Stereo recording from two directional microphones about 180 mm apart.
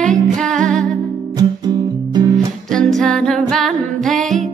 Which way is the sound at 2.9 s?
5° left (ahead or behind).